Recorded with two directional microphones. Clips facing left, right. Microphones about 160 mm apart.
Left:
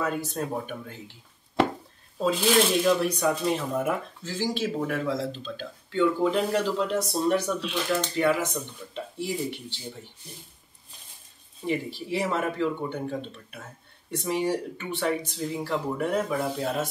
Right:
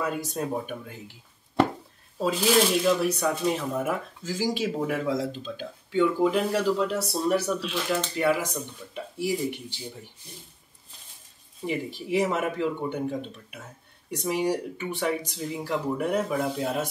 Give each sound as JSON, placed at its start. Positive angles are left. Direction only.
{"t": 0.4, "sound": "speech", "side_deg": -10}
{"t": 2.1, "sound": "speech", "side_deg": -5}
{"t": 11.6, "sound": "speech", "side_deg": -15}
{"t": 16.4, "sound": "speech", "side_deg": 0}